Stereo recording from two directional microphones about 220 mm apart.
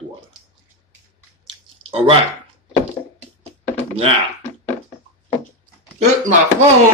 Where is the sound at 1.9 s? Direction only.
25° right (ahead or behind).